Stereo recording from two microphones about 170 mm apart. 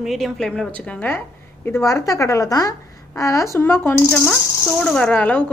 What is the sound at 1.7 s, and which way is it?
Speech, 15° left (ahead or behind).